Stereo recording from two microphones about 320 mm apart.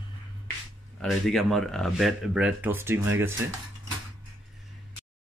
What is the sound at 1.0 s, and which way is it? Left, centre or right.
Speech, centre.